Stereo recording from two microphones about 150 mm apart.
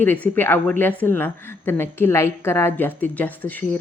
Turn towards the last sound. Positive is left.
turn(degrees=10)  # may be behind; listen again after turning